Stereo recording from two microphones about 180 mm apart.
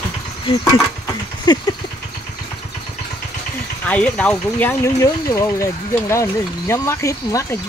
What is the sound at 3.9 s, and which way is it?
Speech, 5° left (ahead or behind).